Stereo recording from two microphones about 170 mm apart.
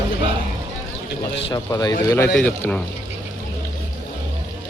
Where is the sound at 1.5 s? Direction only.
20° left (ahead or behind).